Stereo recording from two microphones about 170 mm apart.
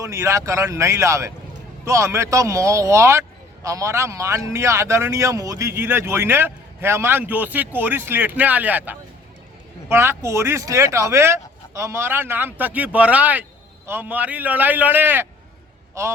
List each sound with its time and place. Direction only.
0.0 s speech: 20° right (ahead or behind)